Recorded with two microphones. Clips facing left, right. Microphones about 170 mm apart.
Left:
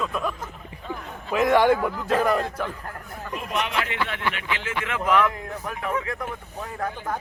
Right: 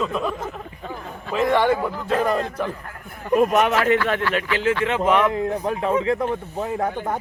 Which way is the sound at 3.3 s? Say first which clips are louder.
Right 11 dB; 45° right (ahead or behind).